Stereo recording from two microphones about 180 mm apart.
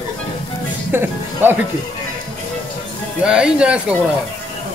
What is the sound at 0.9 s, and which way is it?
Speech, 10° right (ahead or behind).